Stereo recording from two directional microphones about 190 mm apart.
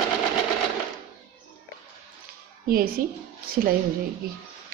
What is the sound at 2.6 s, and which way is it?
Speech, 50° right (ahead or behind).